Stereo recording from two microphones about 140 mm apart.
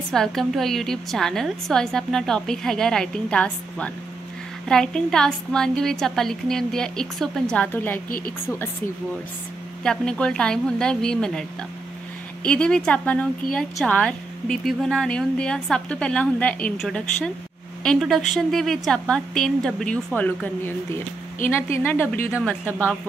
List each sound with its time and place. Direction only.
0.1 s a woman's voice: 5° left (ahead or behind)
9.8 s a woman's voice: 5° left (ahead or behind)
12.4 s a woman's voice: 5° left (ahead or behind)